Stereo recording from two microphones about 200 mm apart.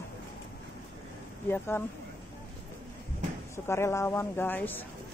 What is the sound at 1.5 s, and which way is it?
Speech, 10° left (ahead or behind).